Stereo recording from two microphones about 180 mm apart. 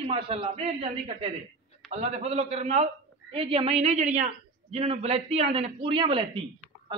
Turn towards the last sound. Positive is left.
turn(degrees=-30)  # may be behind; listen again after turning